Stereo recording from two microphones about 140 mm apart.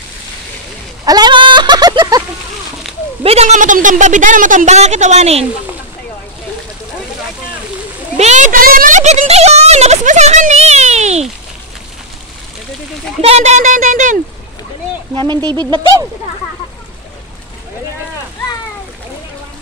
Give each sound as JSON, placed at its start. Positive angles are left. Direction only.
{"t": 1.0, "sound": "fowl", "side_deg": -30}
{"t": 3.3, "sound": "a woman's voice", "side_deg": -50}
{"t": 8.2, "sound": "a woman's voice", "side_deg": -55}
{"t": 13.2, "sound": "a woman's voice", "side_deg": -50}
{"t": 15.1, "sound": "speech", "side_deg": -30}